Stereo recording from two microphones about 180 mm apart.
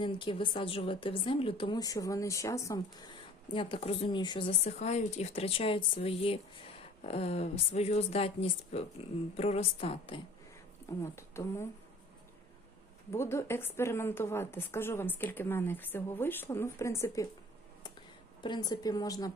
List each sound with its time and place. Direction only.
0.0 s a woman's voice: 30° left (ahead or behind)
11.0 s a woman's voice: 15° left (ahead or behind)
13.1 s a woman's voice: 15° left (ahead or behind)
18.4 s speech: 25° left (ahead or behind)